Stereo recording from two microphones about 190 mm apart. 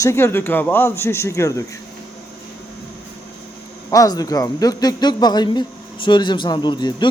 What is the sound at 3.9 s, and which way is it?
A man's voice, 20° left (ahead or behind).